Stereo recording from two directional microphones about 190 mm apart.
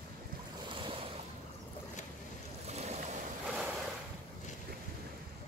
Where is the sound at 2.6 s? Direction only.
35° right (ahead or behind).